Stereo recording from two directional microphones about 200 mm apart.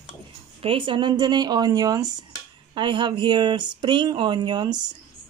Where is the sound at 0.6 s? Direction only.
25° right (ahead or behind).